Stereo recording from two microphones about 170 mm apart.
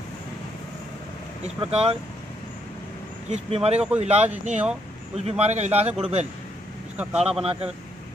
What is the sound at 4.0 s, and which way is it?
A man's voice, 40° right (ahead or behind).